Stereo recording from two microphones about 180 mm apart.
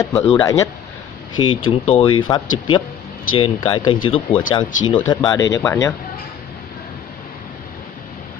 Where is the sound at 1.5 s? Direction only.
30° left (ahead or behind).